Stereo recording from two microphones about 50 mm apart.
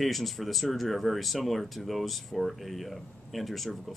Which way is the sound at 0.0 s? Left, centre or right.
Centre.